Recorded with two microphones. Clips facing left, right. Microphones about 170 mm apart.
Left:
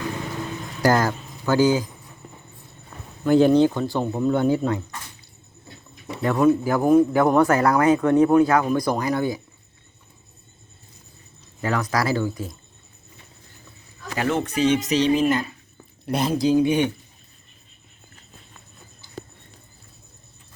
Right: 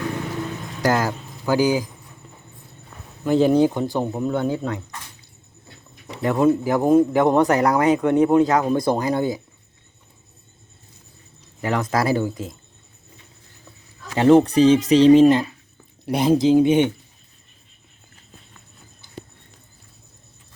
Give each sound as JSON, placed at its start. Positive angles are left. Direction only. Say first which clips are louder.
{"t": 0.8, "sound": "speech", "louder": "left 1 dB", "side_deg": -5}
{"t": 3.2, "sound": "speech", "louder": "left 1 dB", "side_deg": 0}
{"t": 3.7, "sound": "speech", "louder": "right 1 dB", "side_deg": -15}
{"t": 4.4, "sound": "speech", "louder": "left 4 dB", "side_deg": 5}
{"t": 6.1, "sound": "a man's voice", "louder": "even", "side_deg": -20}
{"t": 11.6, "sound": "a man's voice", "louder": "right 2 dB", "side_deg": -25}
{"t": 14.2, "sound": "speech", "louder": "right 9 dB", "side_deg": -35}
{"t": 16.0, "sound": "a man's voice", "louder": "right 4 dB", "side_deg": -15}